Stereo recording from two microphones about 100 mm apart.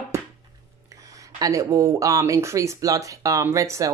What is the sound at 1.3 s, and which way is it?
Speech, 35° right (ahead or behind).